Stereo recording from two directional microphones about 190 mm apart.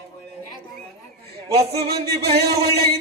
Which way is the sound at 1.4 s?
55° right (ahead or behind).